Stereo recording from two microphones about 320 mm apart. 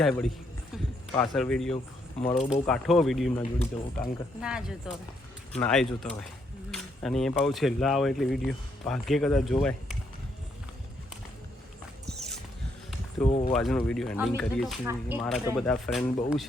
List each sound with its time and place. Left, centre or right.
0.0 s speech: centre
2.3 s speech: left
2.6 s speech: centre
12.0 s a sound: centre
13.2 s speech: left
13.5 s speech: centre